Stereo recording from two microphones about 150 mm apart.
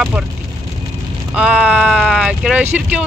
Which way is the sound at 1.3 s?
5° right (ahead or behind).